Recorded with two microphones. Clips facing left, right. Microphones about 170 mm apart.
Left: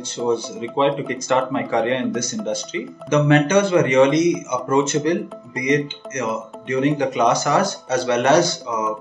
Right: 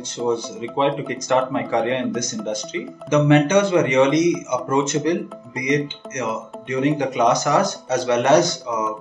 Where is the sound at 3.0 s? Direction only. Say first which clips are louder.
Right 1 dB; 20° right (ahead or behind).